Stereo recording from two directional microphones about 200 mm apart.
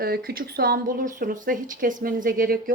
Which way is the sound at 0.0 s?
50° right (ahead or behind).